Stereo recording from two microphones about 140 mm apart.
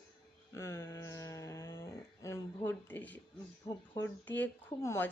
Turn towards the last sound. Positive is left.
turn(degrees=20)  # may be behind; listen again after turning